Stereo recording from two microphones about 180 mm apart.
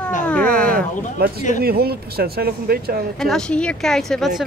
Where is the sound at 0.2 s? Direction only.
5° left (ahead or behind).